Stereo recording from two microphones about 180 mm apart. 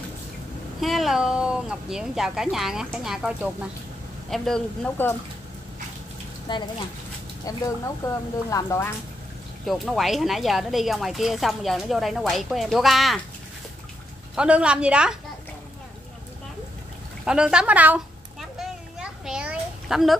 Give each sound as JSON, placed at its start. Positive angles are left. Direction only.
{"t": 0.7, "sound": "speech", "side_deg": 0}
{"t": 6.5, "sound": "speech", "side_deg": 25}
{"t": 9.7, "sound": "speech", "side_deg": 0}
{"t": 14.3, "sound": "speech", "side_deg": -5}
{"t": 17.2, "sound": "a sound", "side_deg": -5}